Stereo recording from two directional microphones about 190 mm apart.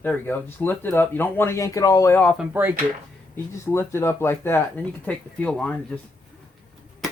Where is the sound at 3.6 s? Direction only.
15° left (ahead or behind).